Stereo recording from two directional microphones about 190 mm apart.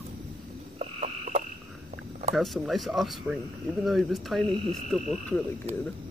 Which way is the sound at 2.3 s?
Centre (ahead or behind).